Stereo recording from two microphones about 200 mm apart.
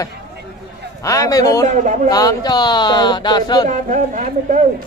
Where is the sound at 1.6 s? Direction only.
40° right (ahead or behind).